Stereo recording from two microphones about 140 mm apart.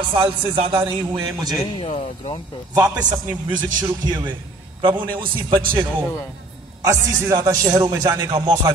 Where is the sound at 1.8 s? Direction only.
45° left (ahead or behind).